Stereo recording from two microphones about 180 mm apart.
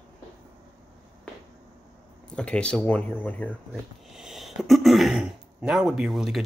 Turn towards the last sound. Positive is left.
turn(degrees=0)  # may be behind; listen again after turning